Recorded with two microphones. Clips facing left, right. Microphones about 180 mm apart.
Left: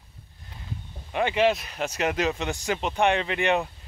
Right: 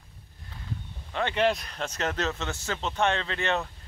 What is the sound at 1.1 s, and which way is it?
Speech, 10° left (ahead or behind).